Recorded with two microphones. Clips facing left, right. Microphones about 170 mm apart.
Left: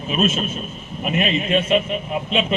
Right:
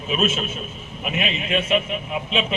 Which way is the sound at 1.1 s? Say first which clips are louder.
Left 5 dB; 40° left (ahead or behind).